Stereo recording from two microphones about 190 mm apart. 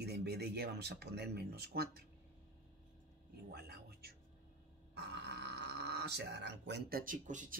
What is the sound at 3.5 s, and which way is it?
Music, 60° right (ahead or behind).